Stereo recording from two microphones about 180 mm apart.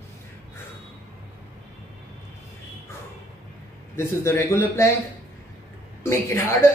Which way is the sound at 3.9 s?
15° left (ahead or behind).